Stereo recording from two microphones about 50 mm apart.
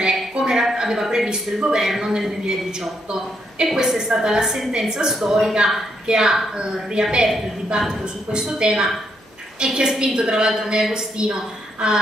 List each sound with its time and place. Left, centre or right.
0.3 s a woman's voice: centre
9.7 s a woman's voice: centre